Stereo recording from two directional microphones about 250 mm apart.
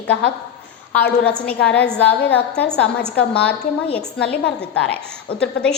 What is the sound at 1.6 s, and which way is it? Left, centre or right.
Speech, left.